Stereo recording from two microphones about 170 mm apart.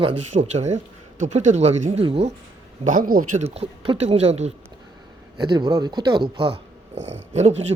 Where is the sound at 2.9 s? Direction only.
55° right (ahead or behind).